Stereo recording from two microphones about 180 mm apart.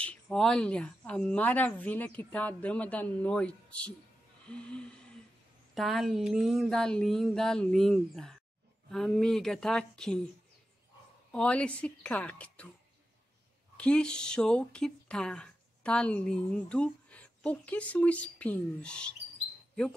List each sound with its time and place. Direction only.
0.0 s speech: 5° left (ahead or behind)
4.5 s a sound: 5° left (ahead or behind)
11.3 s speech: 5° left (ahead or behind)
13.7 s speech: 5° left (ahead or behind)